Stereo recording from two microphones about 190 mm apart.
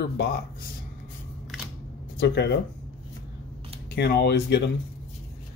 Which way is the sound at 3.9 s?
55° left (ahead or behind).